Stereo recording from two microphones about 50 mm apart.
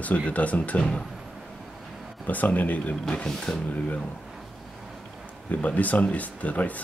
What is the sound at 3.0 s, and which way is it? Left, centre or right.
Speech, centre.